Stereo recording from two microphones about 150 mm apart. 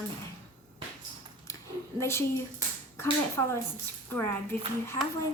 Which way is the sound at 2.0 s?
15° left (ahead or behind).